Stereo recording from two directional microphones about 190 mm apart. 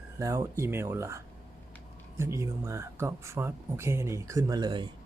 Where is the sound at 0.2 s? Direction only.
15° right (ahead or behind).